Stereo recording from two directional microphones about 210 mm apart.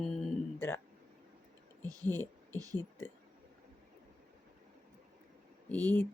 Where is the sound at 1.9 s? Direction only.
15° right (ahead or behind).